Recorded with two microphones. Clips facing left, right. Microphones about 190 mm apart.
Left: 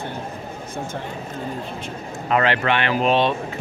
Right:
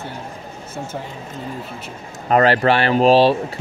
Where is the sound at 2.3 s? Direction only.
40° right (ahead or behind).